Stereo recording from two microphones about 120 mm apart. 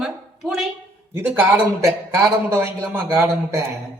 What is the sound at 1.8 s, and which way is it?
A man's voice, 25° right (ahead or behind).